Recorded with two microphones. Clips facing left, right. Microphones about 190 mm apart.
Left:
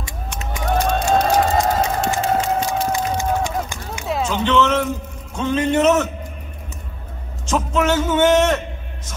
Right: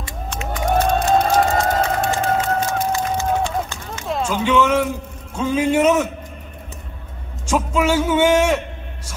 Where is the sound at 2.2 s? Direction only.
55° right (ahead or behind).